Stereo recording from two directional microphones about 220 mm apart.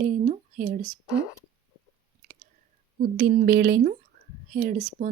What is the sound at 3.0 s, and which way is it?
Speech, 45° right (ahead or behind).